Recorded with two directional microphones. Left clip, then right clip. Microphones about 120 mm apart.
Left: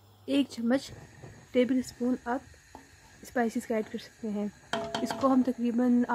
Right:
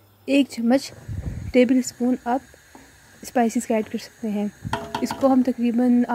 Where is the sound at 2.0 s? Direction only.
15° right (ahead or behind).